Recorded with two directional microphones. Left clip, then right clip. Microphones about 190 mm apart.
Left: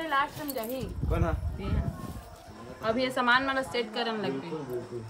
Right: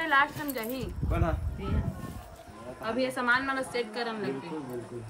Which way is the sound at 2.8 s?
25° left (ahead or behind).